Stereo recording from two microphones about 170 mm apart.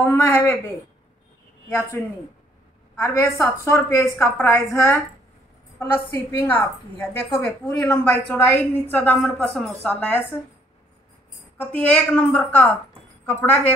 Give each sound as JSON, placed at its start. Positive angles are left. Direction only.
{"t": 0.0, "sound": "a woman's voice", "side_deg": 15}
{"t": 3.0, "sound": "a woman's voice", "side_deg": 20}
{"t": 4.3, "sound": "a woman's voice", "side_deg": 5}
{"t": 4.6, "sound": "a woman's voice", "side_deg": 15}
{"t": 7.6, "sound": "a woman's voice", "side_deg": 5}
{"t": 11.5, "sound": "a woman's voice", "side_deg": 10}